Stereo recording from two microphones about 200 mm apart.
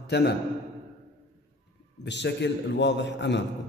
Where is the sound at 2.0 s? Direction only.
60° left (ahead or behind).